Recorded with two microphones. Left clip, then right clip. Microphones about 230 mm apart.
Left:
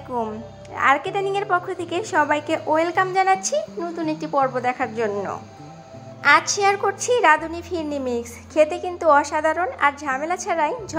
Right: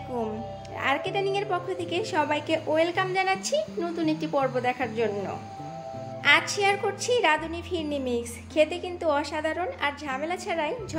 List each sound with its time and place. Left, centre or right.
0.7 s a woman's voice: centre
3.8 s speech: centre
6.4 s speech: centre
6.8 s a woman's voice: centre